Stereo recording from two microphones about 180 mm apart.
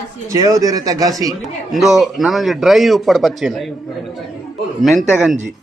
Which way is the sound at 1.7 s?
Centre (ahead or behind).